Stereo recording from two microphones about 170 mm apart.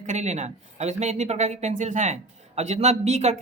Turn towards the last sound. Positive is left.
turn(degrees=-40)  # may be behind; listen again after turning